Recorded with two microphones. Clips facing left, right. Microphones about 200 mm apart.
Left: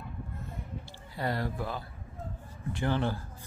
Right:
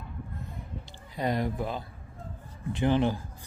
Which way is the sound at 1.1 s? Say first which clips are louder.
Right 4 dB; 20° right (ahead or behind).